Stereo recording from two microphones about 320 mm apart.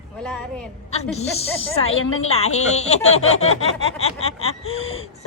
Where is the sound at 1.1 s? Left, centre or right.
Centre.